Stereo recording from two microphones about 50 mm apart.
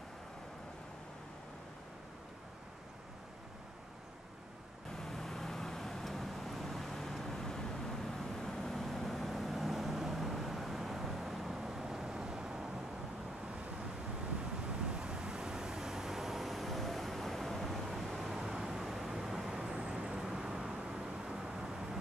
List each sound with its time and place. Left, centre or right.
4.9 s vehicle: centre
14.7 s vehicle: centre
19.7 s vehicle: right